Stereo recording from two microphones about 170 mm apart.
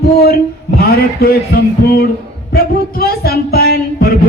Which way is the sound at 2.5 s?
65° left (ahead or behind).